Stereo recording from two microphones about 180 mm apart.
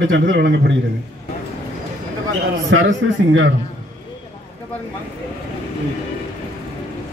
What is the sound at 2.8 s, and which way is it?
Speech, 90° right.